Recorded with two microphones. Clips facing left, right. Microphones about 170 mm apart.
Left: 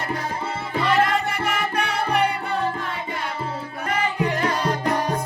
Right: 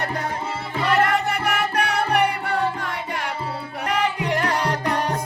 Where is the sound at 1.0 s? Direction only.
65° right (ahead or behind).